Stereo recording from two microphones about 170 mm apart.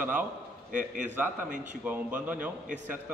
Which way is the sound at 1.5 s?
45° right (ahead or behind).